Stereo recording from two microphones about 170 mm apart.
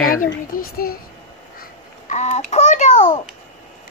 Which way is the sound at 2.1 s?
45° left (ahead or behind).